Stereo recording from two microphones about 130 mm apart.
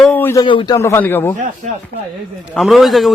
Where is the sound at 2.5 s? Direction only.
Centre (ahead or behind).